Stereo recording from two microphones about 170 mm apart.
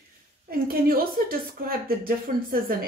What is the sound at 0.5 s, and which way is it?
Speech, 60° right (ahead or behind).